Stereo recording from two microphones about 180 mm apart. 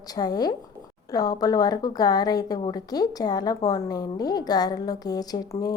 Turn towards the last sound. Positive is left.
turn(degrees=20)  # may be behind; listen again after turning